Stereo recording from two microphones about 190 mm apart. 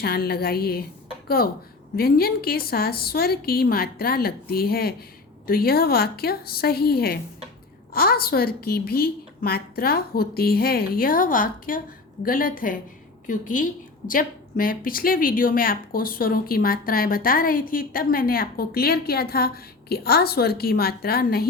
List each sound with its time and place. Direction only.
0.0 s a woman's voice: 55° left (ahead or behind)
2.0 s a woman's voice: 55° left (ahead or behind)